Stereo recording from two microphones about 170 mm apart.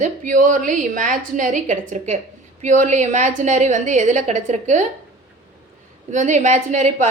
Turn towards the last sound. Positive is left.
turn(degrees=-45)  # may be behind; listen again after turning